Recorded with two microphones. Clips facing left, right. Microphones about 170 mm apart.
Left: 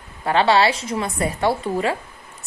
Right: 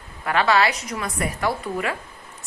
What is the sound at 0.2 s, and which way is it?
A woman's voice, 30° left (ahead or behind).